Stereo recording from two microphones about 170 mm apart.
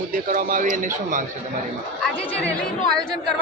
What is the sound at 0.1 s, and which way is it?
A man's voice, 55° right (ahead or behind).